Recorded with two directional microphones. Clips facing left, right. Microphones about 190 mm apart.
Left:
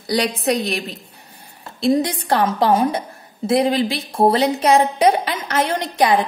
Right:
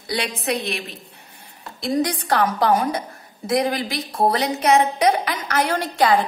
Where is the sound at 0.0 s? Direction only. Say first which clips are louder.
Left 6 dB; 40° left (ahead or behind).